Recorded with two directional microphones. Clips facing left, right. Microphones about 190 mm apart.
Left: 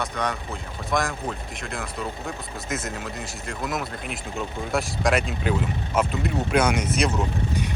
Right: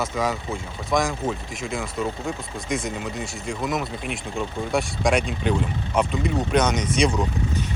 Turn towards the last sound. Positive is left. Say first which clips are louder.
# right 1 dB
turn(degrees=5)  # may be behind; listen again after turning